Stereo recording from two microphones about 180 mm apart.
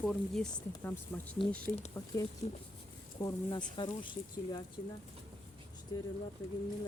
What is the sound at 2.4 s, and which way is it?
Speech, 35° left (ahead or behind).